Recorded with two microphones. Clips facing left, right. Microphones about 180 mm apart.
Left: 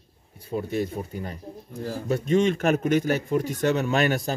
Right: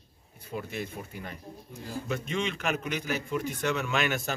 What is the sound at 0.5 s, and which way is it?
Speech, 35° left (ahead or behind).